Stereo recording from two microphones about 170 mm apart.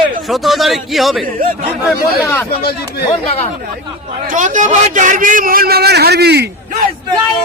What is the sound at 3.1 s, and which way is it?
Speech, 35° left (ahead or behind).